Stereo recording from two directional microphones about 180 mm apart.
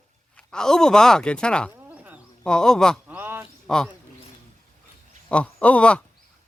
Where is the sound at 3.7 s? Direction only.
5° left (ahead or behind).